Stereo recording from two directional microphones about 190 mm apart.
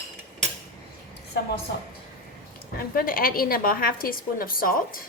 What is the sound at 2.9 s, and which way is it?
A woman's voice, 50° left (ahead or behind).